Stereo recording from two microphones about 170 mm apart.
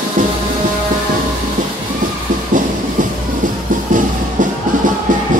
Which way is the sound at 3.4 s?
50° right (ahead or behind).